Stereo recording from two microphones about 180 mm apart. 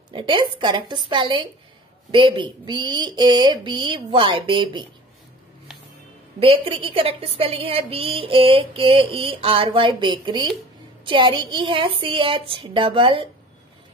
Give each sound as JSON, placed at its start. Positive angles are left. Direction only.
{"t": 0.1, "sound": "speech", "side_deg": -30}
{"t": 6.4, "sound": "a woman's voice", "side_deg": -30}